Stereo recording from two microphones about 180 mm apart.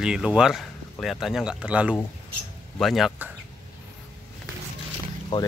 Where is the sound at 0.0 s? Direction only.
5° right (ahead or behind).